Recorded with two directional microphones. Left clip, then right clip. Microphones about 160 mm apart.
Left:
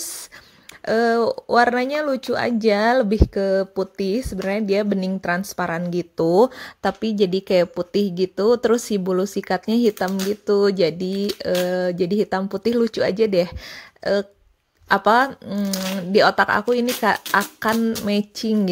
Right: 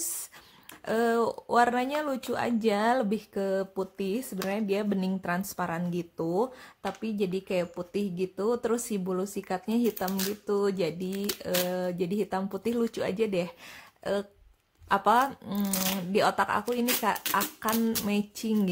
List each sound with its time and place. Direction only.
0.8 s speech: 20° left (ahead or behind)
15.4 s speech: 15° left (ahead or behind)
16.1 s speech: 30° left (ahead or behind)